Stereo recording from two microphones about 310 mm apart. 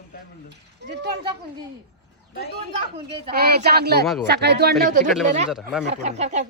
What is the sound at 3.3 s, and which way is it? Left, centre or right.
Speech, right.